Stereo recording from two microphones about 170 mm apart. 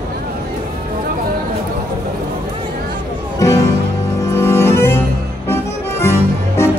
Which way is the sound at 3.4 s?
20° left (ahead or behind).